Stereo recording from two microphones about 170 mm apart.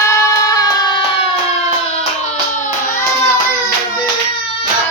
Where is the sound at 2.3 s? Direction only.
50° left (ahead or behind).